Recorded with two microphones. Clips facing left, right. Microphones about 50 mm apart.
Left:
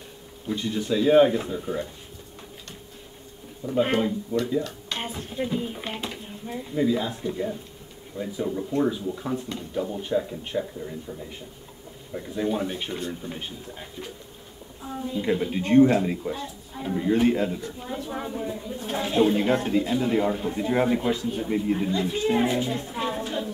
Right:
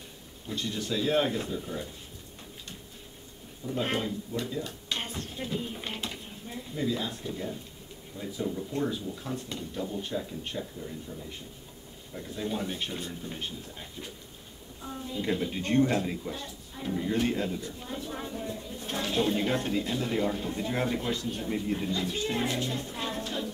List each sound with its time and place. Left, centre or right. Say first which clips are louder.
0.5 s speech: left 7 dB; centre
3.6 s speech: left 7 dB; centre
8.5 s speech: left 7 dB; left
10.6 s speech: left 5 dB; left